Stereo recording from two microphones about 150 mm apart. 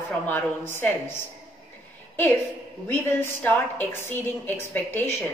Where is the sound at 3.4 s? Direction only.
10° left (ahead or behind).